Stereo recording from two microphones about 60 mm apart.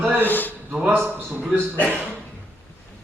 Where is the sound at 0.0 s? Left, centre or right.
Right.